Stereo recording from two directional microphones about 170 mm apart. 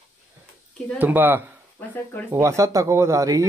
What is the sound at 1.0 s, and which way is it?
Speech, 10° right (ahead or behind).